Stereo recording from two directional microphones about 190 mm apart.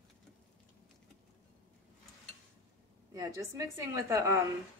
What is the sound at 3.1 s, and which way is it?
A woman's voice, 15° right (ahead or behind).